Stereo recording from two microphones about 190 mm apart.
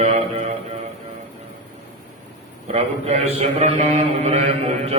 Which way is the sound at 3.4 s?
35° right (ahead or behind).